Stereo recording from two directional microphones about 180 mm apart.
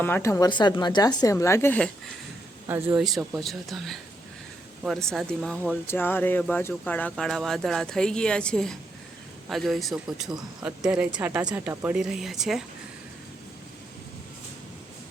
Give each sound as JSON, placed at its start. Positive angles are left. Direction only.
{"t": 0.0, "sound": "a woman's voice", "side_deg": 15}
{"t": 2.9, "sound": "speech", "side_deg": 0}